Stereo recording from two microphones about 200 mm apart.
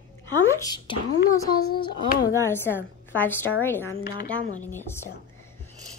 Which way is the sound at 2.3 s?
10° left (ahead or behind).